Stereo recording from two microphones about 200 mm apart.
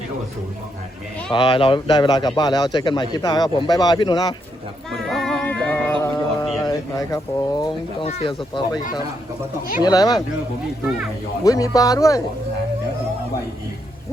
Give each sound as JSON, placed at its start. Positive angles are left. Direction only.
{"t": 1.3, "sound": "a man's voice", "side_deg": 25}
{"t": 4.9, "sound": "female singing", "side_deg": 0}
{"t": 6.6, "sound": "a man's voice", "side_deg": 20}
{"t": 9.8, "sound": "a man's voice", "side_deg": 20}
{"t": 10.8, "sound": "speech", "side_deg": -5}
{"t": 11.4, "sound": "speech", "side_deg": 15}